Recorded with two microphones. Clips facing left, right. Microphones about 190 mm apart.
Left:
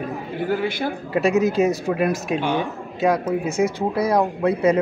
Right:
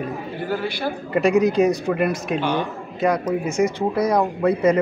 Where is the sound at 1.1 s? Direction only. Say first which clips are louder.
Right 2 dB; 5° left (ahead or behind).